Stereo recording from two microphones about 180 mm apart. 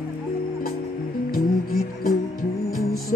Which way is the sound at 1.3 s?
55° left (ahead or behind).